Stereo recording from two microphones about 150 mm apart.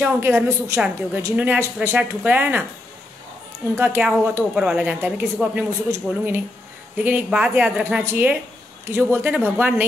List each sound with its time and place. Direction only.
0.0 s speech: 15° right (ahead or behind)
3.7 s speech: 15° right (ahead or behind)